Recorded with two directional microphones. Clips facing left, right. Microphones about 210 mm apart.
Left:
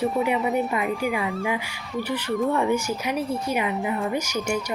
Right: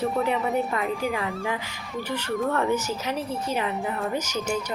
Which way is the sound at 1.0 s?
15° left (ahead or behind).